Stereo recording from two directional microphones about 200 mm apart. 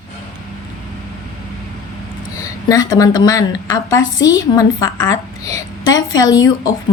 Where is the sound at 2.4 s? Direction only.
15° left (ahead or behind).